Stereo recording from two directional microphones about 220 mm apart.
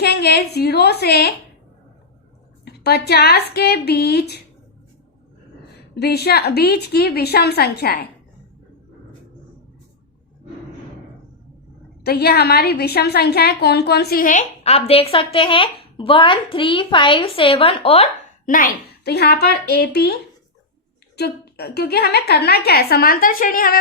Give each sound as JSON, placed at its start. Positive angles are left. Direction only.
{"t": 0.0, "sound": "a woman's voice", "side_deg": 45}
{"t": 2.6, "sound": "a woman's voice", "side_deg": 45}
{"t": 5.9, "sound": "a woman's voice", "side_deg": 45}
{"t": 12.0, "sound": "a woman's voice", "side_deg": 45}
{"t": 21.2, "sound": "a woman's voice", "side_deg": 45}